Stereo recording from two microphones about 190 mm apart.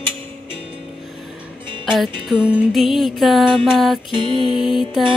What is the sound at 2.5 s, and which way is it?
Music, centre (ahead or behind).